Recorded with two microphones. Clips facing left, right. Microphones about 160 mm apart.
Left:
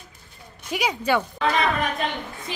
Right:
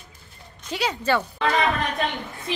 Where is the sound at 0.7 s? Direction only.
10° left (ahead or behind).